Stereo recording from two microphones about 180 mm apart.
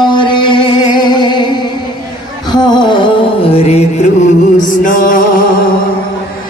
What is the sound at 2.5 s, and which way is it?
Music, 25° left (ahead or behind).